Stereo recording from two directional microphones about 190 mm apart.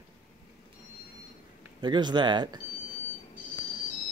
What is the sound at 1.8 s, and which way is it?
Speech, 25° right (ahead or behind).